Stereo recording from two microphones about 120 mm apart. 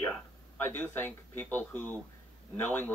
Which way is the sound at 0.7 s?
15° left (ahead or behind).